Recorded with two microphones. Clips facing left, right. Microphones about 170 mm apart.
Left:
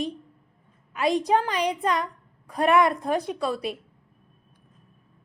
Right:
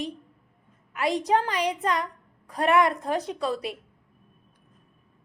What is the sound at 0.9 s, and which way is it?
A woman's voice, 15° left (ahead or behind).